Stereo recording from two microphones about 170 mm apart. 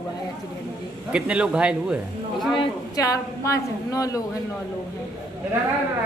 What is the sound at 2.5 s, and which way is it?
A woman's voice, 20° left (ahead or behind).